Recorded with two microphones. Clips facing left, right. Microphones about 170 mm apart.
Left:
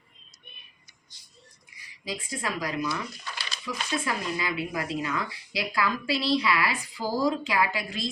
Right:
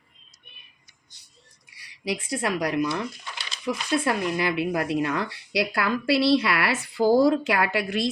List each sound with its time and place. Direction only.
1.7 s speech: 75° right (ahead or behind)
2.9 s a sound: 25° right (ahead or behind)
3.7 s speech: 70° right (ahead or behind)